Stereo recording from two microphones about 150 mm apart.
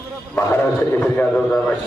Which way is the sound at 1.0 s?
5° left (ahead or behind).